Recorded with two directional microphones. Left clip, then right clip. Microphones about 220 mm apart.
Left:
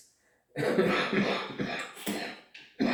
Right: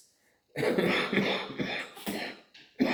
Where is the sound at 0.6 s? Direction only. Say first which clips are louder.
Even; 50° right (ahead or behind).